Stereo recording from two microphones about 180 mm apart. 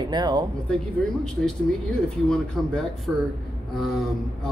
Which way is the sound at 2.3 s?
5° left (ahead or behind).